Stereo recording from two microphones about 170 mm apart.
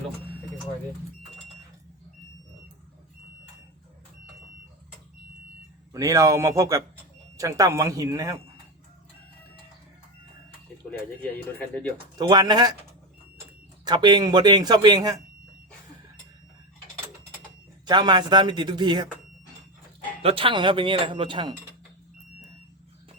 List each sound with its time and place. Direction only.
5.9 s speech: 20° right (ahead or behind)
11.7 s speech: 10° left (ahead or behind)
12.1 s speech: 25° right (ahead or behind)
13.8 s speech: 25° right (ahead or behind)
17.8 s speech: 25° right (ahead or behind)
20.2 s speech: 30° right (ahead or behind)